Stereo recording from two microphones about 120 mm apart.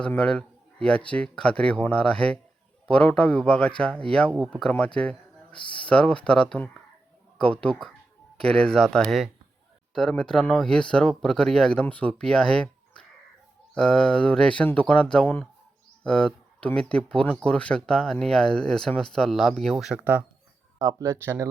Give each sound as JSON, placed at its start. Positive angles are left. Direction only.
{"t": 0.2, "sound": "speech", "side_deg": 5}
{"t": 20.7, "sound": "speech", "side_deg": -25}